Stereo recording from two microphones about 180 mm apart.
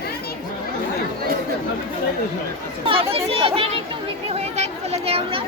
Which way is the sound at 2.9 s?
30° right (ahead or behind).